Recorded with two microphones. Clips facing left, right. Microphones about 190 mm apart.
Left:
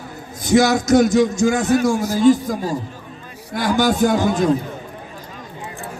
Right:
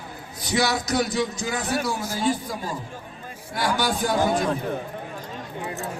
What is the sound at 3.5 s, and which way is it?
Speech, 45° left (ahead or behind).